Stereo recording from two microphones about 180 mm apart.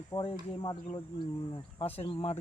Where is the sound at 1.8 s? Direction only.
35° left (ahead or behind).